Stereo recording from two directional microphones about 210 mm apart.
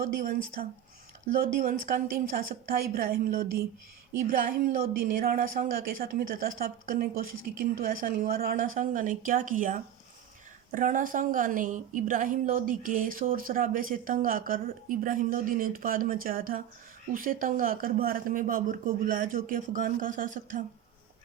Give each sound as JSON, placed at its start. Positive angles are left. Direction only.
{"t": 0.0, "sound": "a woman's voice", "side_deg": -40}